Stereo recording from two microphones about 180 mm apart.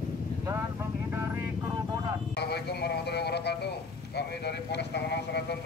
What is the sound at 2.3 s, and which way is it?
Speech, 65° left (ahead or behind).